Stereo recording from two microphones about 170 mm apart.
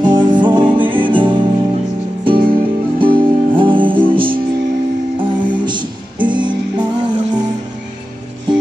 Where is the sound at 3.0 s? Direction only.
30° right (ahead or behind).